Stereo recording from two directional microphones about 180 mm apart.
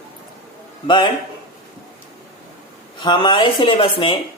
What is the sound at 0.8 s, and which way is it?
Speech, 25° left (ahead or behind).